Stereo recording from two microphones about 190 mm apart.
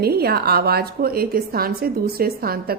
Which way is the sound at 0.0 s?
55° right (ahead or behind).